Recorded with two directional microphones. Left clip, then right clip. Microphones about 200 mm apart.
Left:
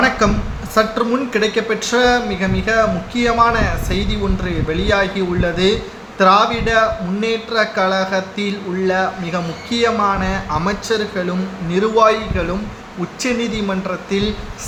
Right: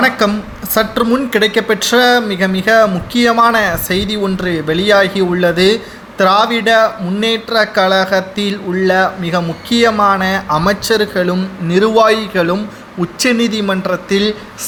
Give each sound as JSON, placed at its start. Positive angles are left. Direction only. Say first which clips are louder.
{"t": 0.2, "sound": "speech", "louder": "right 2 dB", "side_deg": -30}